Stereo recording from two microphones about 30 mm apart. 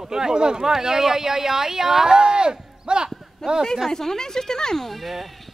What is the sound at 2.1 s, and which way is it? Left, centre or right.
Speech, right.